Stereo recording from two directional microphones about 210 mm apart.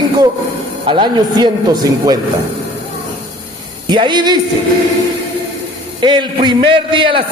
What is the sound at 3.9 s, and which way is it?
Speech, 20° right (ahead or behind).